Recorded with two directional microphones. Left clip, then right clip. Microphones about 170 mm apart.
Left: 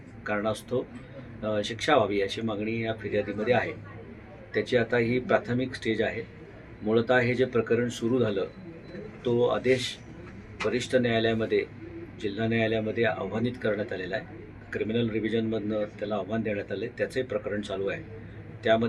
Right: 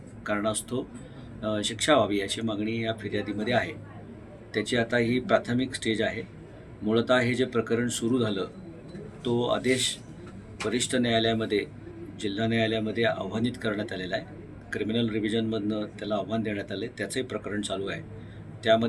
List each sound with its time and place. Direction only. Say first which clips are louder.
0.3 s a man's voice: even; 10° right (ahead or behind)